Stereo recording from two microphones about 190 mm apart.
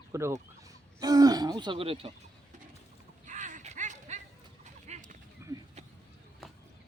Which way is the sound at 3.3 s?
40° right (ahead or behind).